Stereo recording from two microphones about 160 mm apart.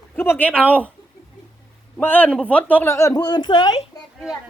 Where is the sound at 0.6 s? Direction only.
10° right (ahead or behind).